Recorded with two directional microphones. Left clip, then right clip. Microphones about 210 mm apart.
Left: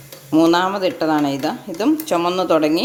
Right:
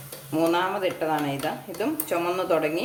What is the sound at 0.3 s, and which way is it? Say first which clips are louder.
Speech: left 8 dB; 45° left (ahead or behind).